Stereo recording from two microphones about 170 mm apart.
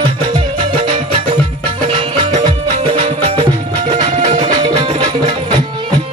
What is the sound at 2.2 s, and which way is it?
Music, 35° right (ahead or behind).